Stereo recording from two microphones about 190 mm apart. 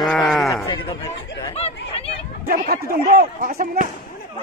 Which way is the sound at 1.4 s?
30° left (ahead or behind).